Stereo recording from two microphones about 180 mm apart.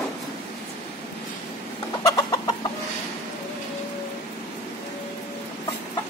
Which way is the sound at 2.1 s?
20° left (ahead or behind).